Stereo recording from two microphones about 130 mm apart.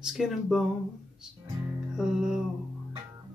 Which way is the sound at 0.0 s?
5° right (ahead or behind).